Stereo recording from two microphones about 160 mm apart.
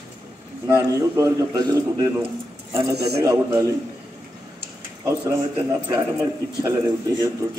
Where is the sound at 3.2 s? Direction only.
20° right (ahead or behind).